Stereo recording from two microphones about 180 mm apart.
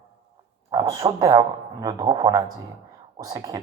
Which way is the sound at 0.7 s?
25° right (ahead or behind).